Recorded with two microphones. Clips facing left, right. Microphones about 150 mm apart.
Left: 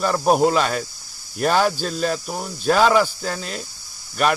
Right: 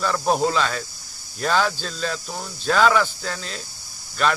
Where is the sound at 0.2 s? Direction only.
15° left (ahead or behind).